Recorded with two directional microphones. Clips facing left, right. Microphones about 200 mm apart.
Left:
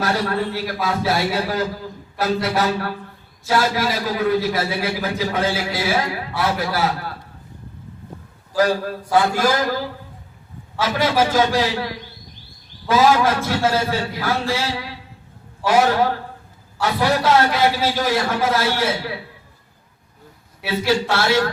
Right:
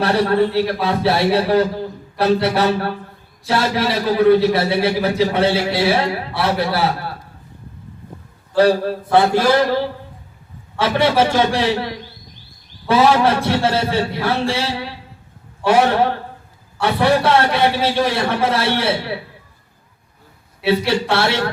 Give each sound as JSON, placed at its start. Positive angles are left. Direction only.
{"t": 0.0, "sound": "a man's voice", "side_deg": -30}
{"t": 8.5, "sound": "a man's voice", "side_deg": -30}
{"t": 12.9, "sound": "a man's voice", "side_deg": -30}
{"t": 20.7, "sound": "a man's voice", "side_deg": -30}